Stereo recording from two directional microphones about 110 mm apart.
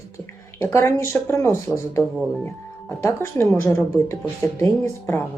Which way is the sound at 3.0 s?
25° left (ahead or behind).